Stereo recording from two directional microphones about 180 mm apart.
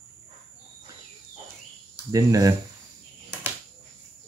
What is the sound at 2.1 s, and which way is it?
Speech, 20° right (ahead or behind).